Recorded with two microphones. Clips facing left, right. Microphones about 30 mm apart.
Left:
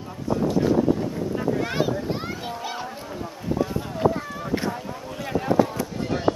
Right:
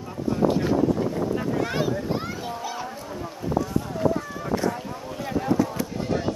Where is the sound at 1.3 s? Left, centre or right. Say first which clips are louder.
Left 1 dB; centre.